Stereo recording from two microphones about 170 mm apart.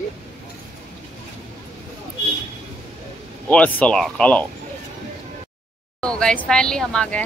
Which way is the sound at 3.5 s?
5° left (ahead or behind).